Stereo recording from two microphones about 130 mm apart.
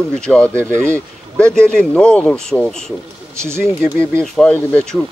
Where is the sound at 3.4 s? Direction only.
20° right (ahead or behind).